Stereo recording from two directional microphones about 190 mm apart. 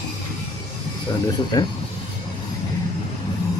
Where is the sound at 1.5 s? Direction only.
20° left (ahead or behind).